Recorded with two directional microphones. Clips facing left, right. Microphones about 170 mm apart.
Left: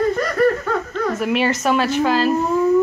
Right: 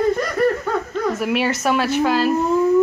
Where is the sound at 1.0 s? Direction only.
10° right (ahead or behind).